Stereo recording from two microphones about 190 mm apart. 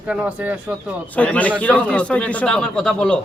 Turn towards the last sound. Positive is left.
turn(degrees=5)  # may be behind; listen again after turning